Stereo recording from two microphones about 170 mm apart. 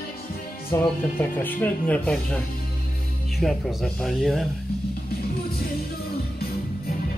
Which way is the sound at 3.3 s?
Centre (ahead or behind).